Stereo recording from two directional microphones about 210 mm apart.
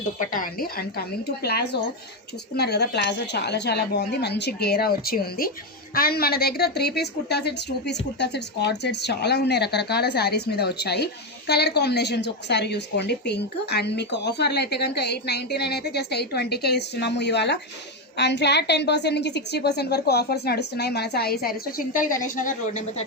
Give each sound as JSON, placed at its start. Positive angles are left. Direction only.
{"t": 0.2, "sound": "a woman's voice", "side_deg": 45}